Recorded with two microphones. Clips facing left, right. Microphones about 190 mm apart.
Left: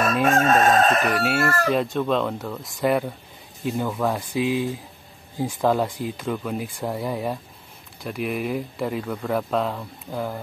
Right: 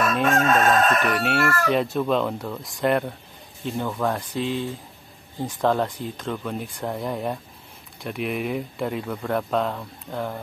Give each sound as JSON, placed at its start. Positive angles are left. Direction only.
{"t": 0.1, "sound": "chicken", "side_deg": 5}
{"t": 0.5, "sound": "crowing", "side_deg": 30}
{"t": 1.1, "sound": "speech", "side_deg": 5}